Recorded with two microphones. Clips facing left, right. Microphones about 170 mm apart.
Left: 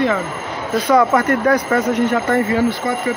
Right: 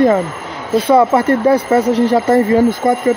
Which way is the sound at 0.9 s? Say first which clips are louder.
Right 3 dB; 30° right (ahead or behind).